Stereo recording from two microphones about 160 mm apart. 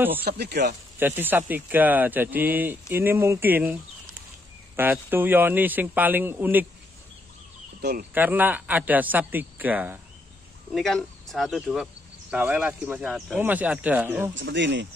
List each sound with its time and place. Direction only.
0.2 s speech: 85° right
0.9 s speech: 15° right (ahead or behind)
7.8 s speech: 75° right (ahead or behind)
8.1 s speech: 10° right (ahead or behind)
10.7 s speech: centre (ahead or behind)
14.4 s speech: 90° right